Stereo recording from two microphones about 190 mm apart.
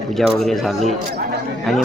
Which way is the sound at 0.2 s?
Centre (ahead or behind).